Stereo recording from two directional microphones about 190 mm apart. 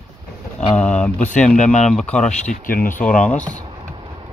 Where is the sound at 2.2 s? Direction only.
40° left (ahead or behind).